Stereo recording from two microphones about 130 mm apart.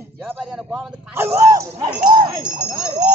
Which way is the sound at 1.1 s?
15° right (ahead or behind).